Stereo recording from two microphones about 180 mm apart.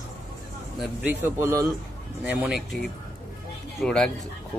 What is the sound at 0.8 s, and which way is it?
Speech, 10° right (ahead or behind).